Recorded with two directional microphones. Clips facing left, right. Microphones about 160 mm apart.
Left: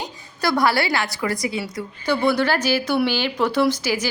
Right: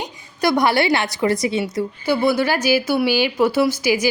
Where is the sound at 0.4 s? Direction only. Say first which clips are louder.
Right 3 dB; 20° right (ahead or behind).